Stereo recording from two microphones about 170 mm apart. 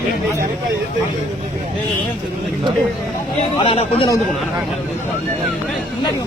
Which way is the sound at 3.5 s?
35° left (ahead or behind).